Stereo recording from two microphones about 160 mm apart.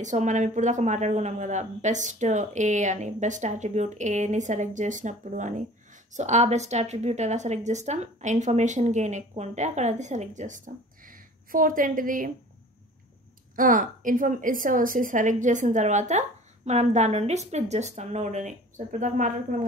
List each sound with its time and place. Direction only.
0.0 s a woman's voice: 50° right (ahead or behind)
13.6 s a woman's voice: 55° right (ahead or behind)